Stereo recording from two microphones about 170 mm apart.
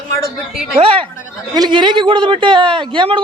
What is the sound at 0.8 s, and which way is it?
A man's voice, 35° right (ahead or behind).